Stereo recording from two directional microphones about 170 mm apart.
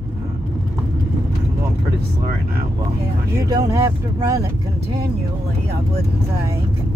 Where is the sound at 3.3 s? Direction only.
20° right (ahead or behind).